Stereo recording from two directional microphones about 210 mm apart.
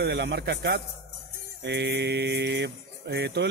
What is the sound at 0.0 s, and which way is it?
Speech, 55° right (ahead or behind).